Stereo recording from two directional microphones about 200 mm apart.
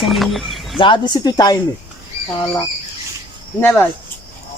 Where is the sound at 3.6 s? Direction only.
10° left (ahead or behind).